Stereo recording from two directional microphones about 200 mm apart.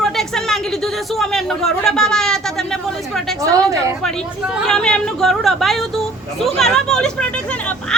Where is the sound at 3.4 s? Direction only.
15° right (ahead or behind).